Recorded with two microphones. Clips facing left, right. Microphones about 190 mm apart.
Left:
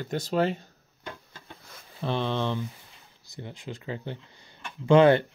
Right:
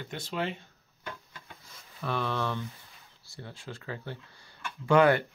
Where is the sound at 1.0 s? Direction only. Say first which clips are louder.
Left 1 dB; 25° left (ahead or behind).